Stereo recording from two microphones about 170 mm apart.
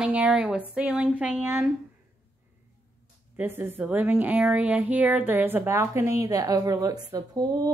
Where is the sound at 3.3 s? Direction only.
15° right (ahead or behind).